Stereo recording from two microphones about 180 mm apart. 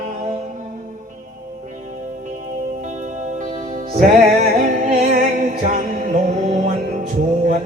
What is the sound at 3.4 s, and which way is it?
Music, 40° right (ahead or behind).